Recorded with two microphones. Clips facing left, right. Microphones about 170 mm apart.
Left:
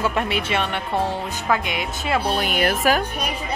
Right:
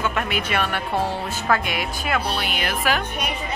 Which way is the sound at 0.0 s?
30° left (ahead or behind).